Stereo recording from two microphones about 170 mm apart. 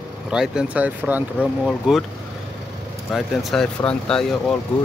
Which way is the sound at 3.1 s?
Centre (ahead or behind).